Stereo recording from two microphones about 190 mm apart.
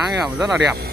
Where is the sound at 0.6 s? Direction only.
60° right (ahead or behind).